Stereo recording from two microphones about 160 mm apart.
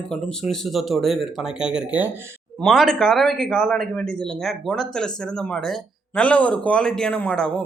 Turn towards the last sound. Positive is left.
turn(degrees=5)  # may be behind; listen again after turning